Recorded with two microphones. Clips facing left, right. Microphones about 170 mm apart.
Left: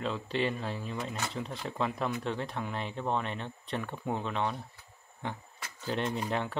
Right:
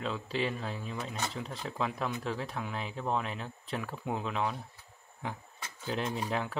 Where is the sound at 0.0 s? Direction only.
Centre (ahead or behind).